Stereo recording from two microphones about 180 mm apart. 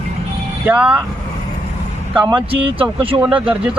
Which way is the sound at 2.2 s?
25° right (ahead or behind).